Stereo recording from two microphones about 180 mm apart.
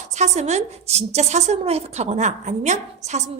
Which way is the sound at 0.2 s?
40° right (ahead or behind).